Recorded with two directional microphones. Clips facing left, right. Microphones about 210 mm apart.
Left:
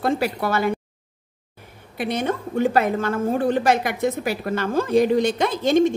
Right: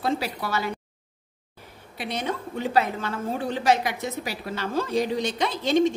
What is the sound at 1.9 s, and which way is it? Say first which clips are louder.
A woman's voice: left 6 dB; 50° left (ahead or behind).